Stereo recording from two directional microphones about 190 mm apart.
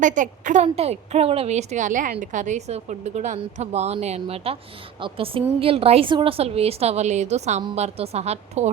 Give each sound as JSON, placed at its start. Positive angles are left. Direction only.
{"t": 0.0, "sound": "a woman's voice", "side_deg": -40}